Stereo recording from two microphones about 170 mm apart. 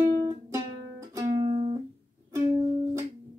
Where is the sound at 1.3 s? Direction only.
30° right (ahead or behind).